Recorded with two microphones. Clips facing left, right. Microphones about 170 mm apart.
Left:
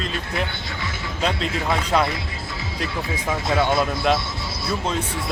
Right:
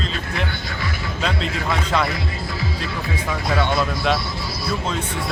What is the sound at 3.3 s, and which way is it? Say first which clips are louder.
Speech: left 1 dB; 25° left (ahead or behind).